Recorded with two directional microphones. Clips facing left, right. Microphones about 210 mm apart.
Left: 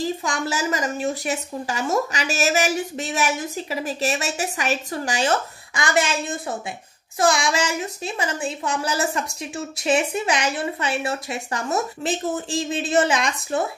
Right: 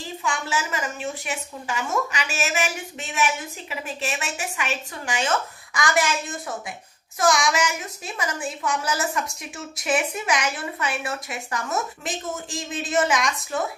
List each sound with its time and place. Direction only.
0.2 s a woman's voice: 40° left (ahead or behind)
5.8 s a woman's voice: 25° left (ahead or behind)